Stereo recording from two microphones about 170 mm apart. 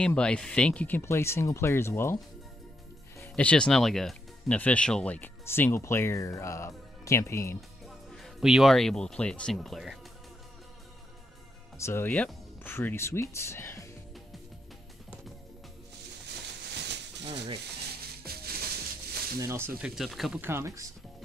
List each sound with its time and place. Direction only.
0.0 s speech: 5° left (ahead or behind)
7.8 s speech: centre (ahead or behind)
11.8 s speech: 15° left (ahead or behind)
12.1 s speech: 5° left (ahead or behind)
16.3 s a sound: 90° right
18.2 s music: 65° right (ahead or behind)
19.4 s speech: 15° right (ahead or behind)
19.8 s speech: centre (ahead or behind)
20.3 s speech: 15° right (ahead or behind)